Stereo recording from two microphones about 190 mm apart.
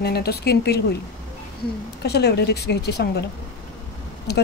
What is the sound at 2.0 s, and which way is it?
Speech, 60° left (ahead or behind).